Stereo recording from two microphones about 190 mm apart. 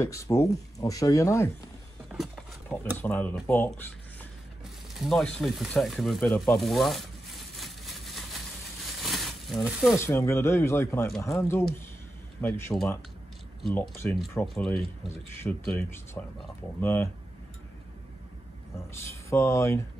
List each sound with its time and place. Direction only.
0.0 s speech: 15° left (ahead or behind)
2.1 s a sound: 5° left (ahead or behind)
3.0 s speech: 10° left (ahead or behind)
4.9 s speech: centre (ahead or behind)
9.0 s a sound: centre (ahead or behind)
9.9 s speech: 15° left (ahead or behind)
18.9 s speech: 15° left (ahead or behind)